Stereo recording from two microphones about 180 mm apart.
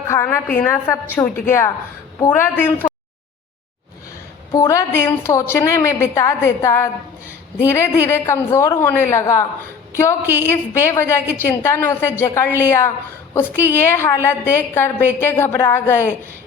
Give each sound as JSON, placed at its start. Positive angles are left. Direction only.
{"t": 0.1, "sound": "a woman's voice", "side_deg": 15}
{"t": 4.5, "sound": "a woman's voice", "side_deg": 20}